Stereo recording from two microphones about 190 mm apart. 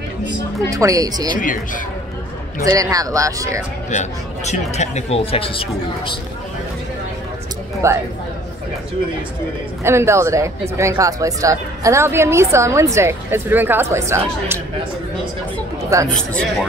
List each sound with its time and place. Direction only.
0.7 s a woman's voice: 15° right (ahead or behind)
1.3 s speech: 45° left (ahead or behind)
2.6 s a woman's voice: 20° right (ahead or behind)
3.9 s speech: 35° left (ahead or behind)
7.8 s a woman's voice: 15° right (ahead or behind)
9.8 s a woman's voice: 15° right (ahead or behind)
15.8 s chatter: 15° right (ahead or behind)